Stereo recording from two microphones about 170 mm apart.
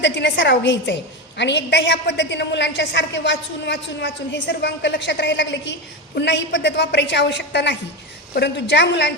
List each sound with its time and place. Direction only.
0.0 s a woman's voice: 90° left